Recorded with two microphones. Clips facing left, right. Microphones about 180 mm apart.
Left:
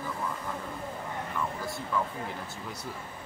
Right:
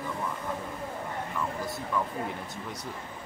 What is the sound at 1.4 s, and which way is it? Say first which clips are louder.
Speech: right 1 dB; centre (ahead or behind).